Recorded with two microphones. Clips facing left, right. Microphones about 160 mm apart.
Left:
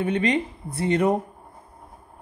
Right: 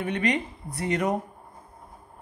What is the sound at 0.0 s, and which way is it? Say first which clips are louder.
Speech: left 4 dB; 30° left (ahead or behind).